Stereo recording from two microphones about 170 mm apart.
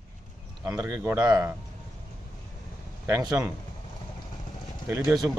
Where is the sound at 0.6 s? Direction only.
15° right (ahead or behind).